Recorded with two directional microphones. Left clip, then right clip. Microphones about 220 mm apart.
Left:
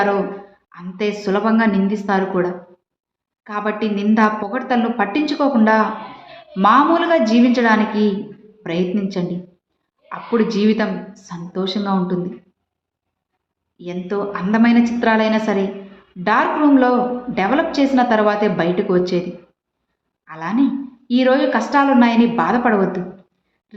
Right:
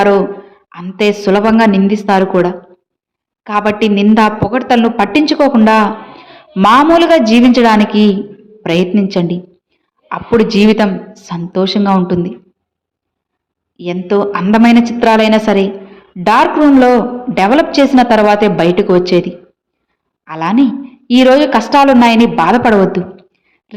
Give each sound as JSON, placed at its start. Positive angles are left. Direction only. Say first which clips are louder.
{"t": 0.7, "sound": "a woman's voice", "louder": "right 10 dB", "side_deg": -35}
{"t": 13.7, "sound": "a woman's voice", "louder": "right 10 dB", "side_deg": -35}
{"t": 20.2, "sound": "a woman's voice", "louder": "right 8 dB", "side_deg": -35}
{"t": 23.7, "sound": "a sound", "louder": "right 10 dB", "side_deg": -35}